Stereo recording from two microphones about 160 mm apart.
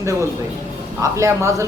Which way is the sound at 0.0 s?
20° right (ahead or behind).